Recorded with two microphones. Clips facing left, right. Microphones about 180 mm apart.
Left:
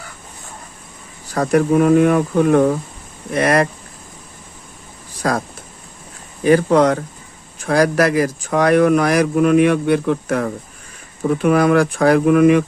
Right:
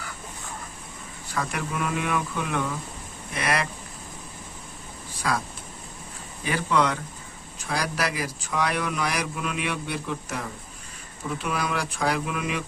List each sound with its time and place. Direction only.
1.3 s speech: 45° left (ahead or behind)
5.2 s speech: 45° left (ahead or behind)
6.4 s speech: 45° left (ahead or behind)